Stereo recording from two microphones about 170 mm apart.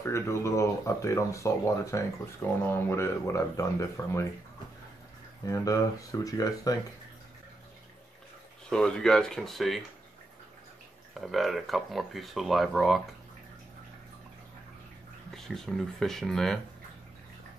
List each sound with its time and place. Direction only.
0.0 s speech: 15° left (ahead or behind)
5.4 s speech: 20° left (ahead or behind)
8.6 s speech: 5° left (ahead or behind)
11.1 s speech: centre (ahead or behind)
15.3 s speech: centre (ahead or behind)